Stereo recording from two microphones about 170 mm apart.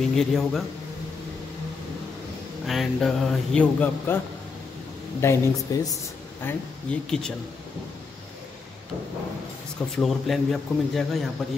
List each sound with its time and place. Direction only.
0.0 s speech: centre (ahead or behind)
2.6 s speech: centre (ahead or behind)
5.2 s speech: 15° left (ahead or behind)
9.9 s speech: centre (ahead or behind)